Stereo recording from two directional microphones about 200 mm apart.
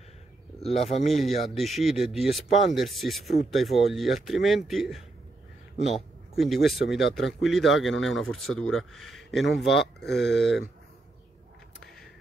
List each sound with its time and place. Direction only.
0.6 s speech: 30° left (ahead or behind)
1.5 s speech: centre (ahead or behind)
6.3 s speech: centre (ahead or behind)